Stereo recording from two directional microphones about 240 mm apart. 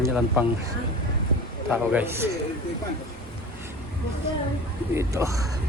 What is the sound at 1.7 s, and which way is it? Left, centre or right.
Speech, centre.